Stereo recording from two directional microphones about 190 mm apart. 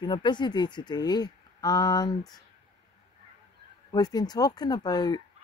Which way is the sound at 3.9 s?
20° left (ahead or behind).